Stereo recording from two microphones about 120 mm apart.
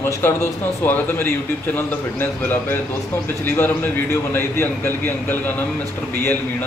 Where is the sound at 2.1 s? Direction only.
15° left (ahead or behind).